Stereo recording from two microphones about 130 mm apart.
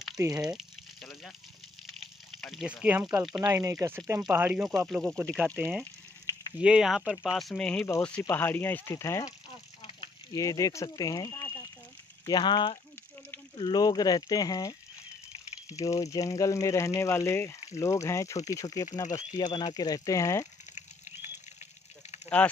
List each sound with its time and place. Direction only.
0.4 s a sound: 5° right (ahead or behind)
1.9 s water: centre (ahead or behind)
2.8 s speech: 10° right (ahead or behind)
3.4 s speech: 20° right (ahead or behind)
4.6 s speech: centre (ahead or behind)
6.6 s speech: 5° right (ahead or behind)
8.2 s speech: 20° left (ahead or behind)
9.5 s a sound: 40° left (ahead or behind)
10.3 s speech: 25° left (ahead or behind)
15.8 s speech: 25° left (ahead or behind)
22.3 s speech: 10° left (ahead or behind)